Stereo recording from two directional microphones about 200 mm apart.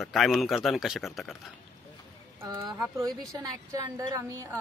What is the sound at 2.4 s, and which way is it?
A woman's voice, 20° right (ahead or behind).